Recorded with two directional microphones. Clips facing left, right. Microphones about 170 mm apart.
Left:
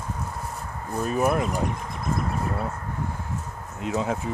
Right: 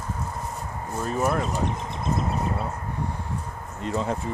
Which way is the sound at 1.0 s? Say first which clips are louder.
Left 2 dB; 15° left (ahead or behind).